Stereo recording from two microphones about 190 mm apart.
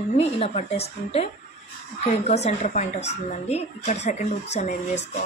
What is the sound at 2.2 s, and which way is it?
A woman's voice, 35° left (ahead or behind).